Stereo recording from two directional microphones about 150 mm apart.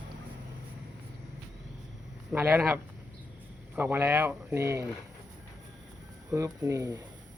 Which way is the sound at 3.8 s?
15° right (ahead or behind).